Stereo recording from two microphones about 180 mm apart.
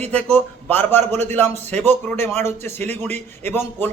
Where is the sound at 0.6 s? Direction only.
10° left (ahead or behind).